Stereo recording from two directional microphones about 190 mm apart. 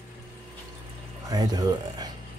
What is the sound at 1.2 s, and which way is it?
Speech, 20° right (ahead or behind).